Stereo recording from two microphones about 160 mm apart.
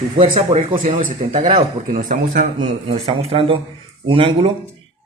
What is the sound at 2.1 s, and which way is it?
Speech, 55° right (ahead or behind).